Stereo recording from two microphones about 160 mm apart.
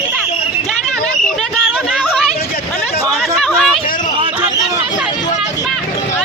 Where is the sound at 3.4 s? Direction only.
Centre (ahead or behind).